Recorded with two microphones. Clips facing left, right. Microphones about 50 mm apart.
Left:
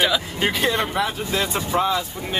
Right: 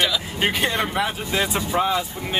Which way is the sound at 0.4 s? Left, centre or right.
Centre.